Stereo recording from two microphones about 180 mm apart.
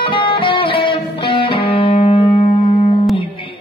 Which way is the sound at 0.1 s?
30° left (ahead or behind).